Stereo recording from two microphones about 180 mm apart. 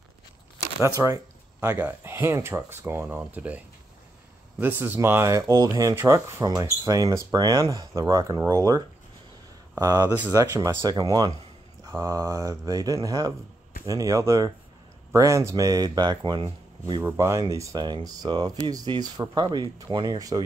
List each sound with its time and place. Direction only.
0.9 s speech: 15° right (ahead or behind)